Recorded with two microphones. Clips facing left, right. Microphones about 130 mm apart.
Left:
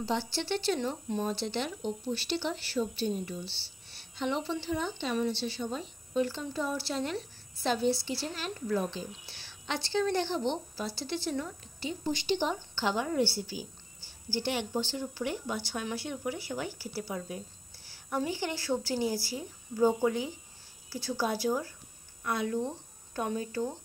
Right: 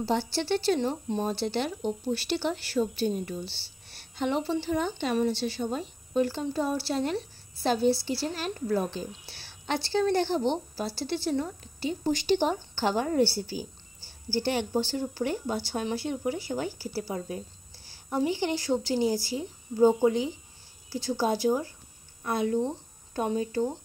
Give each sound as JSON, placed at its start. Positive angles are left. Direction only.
{"t": 0.0, "sound": "a woman's voice", "side_deg": -40}
{"t": 4.7, "sound": "a woman's voice", "side_deg": -55}
{"t": 5.1, "sound": "a woman's voice", "side_deg": -40}
{"t": 18.1, "sound": "a woman's voice", "side_deg": -25}